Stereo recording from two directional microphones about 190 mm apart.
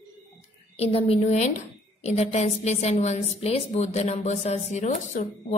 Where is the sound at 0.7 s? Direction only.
30° left (ahead or behind).